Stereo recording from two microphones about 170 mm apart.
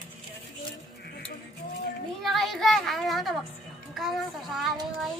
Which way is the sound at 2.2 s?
Centre (ahead or behind).